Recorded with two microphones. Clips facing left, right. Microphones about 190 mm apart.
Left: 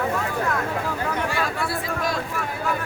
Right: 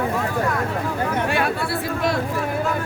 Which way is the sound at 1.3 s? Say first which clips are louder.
Right 4 dB; 60° right (ahead or behind).